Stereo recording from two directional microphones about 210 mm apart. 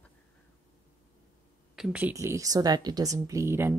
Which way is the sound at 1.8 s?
5° right (ahead or behind).